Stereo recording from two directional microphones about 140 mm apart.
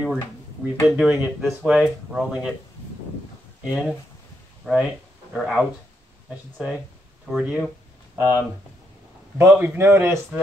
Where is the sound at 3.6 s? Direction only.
5° right (ahead or behind).